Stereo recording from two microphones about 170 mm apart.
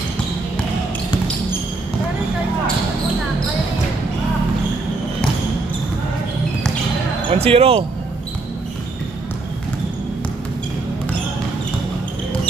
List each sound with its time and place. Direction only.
7.2 s speech: 35° right (ahead or behind)